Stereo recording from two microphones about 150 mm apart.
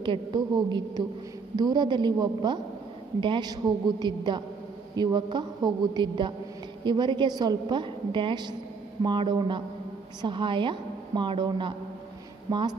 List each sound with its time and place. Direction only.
0.0 s a woman's voice: 30° right (ahead or behind)